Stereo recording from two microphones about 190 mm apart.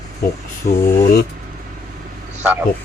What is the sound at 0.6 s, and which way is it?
Speech, 35° left (ahead or behind).